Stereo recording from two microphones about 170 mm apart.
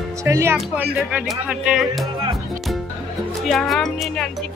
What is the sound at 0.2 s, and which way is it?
Speech, 15° right (ahead or behind).